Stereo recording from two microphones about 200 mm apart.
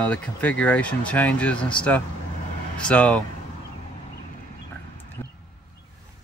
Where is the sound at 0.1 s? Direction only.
5° left (ahead or behind).